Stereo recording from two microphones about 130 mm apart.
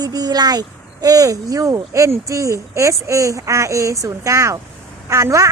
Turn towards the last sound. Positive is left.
turn(degrees=-25)  # may be behind; listen again after turning